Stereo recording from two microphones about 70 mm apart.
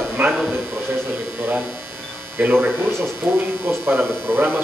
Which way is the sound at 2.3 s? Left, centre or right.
Right.